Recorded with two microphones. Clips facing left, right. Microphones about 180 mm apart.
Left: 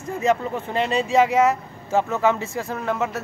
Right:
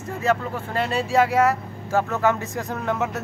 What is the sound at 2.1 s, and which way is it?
Speech, 10° left (ahead or behind).